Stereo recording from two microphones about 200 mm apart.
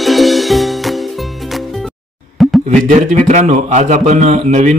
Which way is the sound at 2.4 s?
Centre (ahead or behind).